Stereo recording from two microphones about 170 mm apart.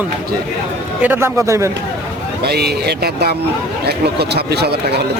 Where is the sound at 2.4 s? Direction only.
70° right (ahead or behind).